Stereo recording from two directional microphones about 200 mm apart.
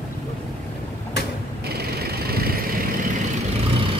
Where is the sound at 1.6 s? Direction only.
50° right (ahead or behind).